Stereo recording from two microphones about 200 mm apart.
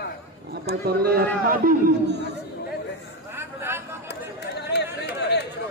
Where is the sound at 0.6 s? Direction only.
50° right (ahead or behind).